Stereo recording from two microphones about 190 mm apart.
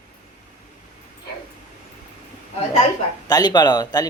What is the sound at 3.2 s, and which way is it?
Speech, 20° left (ahead or behind).